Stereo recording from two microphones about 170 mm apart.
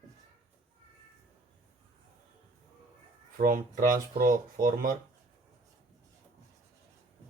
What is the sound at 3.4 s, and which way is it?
Speech, 50° right (ahead or behind).